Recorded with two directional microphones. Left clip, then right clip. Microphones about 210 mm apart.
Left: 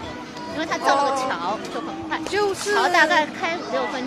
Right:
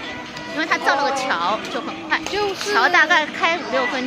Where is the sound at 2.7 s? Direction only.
35° right (ahead or behind).